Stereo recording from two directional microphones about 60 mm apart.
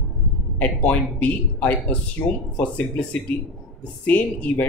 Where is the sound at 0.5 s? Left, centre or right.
Left.